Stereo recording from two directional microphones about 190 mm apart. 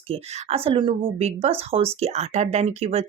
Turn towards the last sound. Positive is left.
turn(degrees=-35)  # may be behind; listen again after turning